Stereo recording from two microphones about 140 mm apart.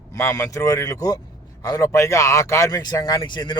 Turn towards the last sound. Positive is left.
turn(degrees=35)  # may be behind; listen again after turning